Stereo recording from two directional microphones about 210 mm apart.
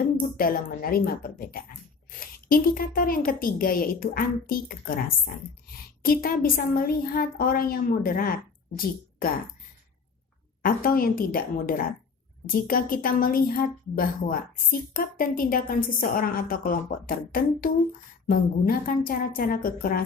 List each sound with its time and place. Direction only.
0.2 s a woman's voice: 40° left (ahead or behind)
10.6 s a woman's voice: 45° left (ahead or behind)